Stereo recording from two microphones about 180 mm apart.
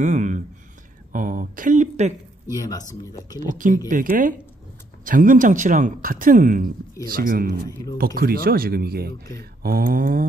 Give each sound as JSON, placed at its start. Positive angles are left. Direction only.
{"t": 0.0, "sound": "speech", "side_deg": -40}
{"t": 2.5, "sound": "speech", "side_deg": 20}
{"t": 3.5, "sound": "speech", "side_deg": -45}